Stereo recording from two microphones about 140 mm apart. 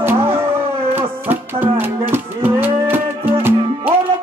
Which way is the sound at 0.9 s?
15° right (ahead or behind).